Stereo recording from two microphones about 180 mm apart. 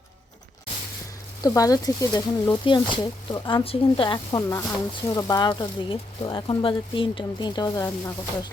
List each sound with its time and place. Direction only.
1.4 s speech: 20° left (ahead or behind)